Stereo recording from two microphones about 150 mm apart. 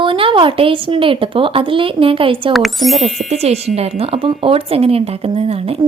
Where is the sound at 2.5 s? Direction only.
Centre (ahead or behind).